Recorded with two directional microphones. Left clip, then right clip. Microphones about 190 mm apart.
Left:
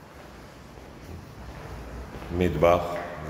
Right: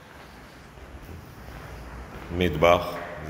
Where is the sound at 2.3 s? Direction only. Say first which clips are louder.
Right 1 dB; centre (ahead or behind).